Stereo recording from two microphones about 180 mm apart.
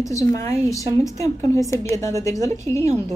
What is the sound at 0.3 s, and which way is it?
A woman's voice, 15° left (ahead or behind).